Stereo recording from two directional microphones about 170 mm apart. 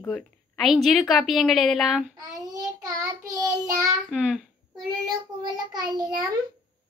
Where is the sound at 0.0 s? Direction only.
5° left (ahead or behind).